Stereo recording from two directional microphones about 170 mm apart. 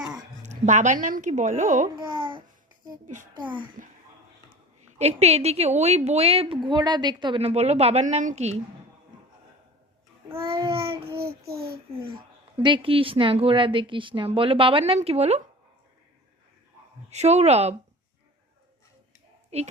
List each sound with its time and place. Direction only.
0.4 s a woman's voice: 45° right (ahead or behind)
2.0 s babbling: 30° right (ahead or behind)
3.8 s a woman's voice: 50° right (ahead or behind)
4.9 s a woman's voice: 40° right (ahead or behind)
10.5 s babbling: 30° right (ahead or behind)
11.2 s a child's voice: 65° right (ahead or behind)
12.1 s a woman's voice: 30° right (ahead or behind)
17.1 s a woman's voice: 40° right (ahead or behind)